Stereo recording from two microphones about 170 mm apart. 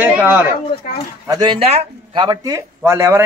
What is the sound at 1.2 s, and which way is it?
A man's voice, 25° right (ahead or behind).